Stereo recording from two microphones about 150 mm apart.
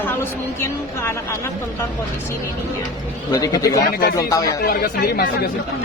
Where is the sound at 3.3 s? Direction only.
25° left (ahead or behind).